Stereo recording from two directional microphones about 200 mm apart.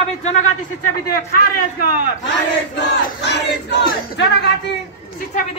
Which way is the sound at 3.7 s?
60° left (ahead or behind).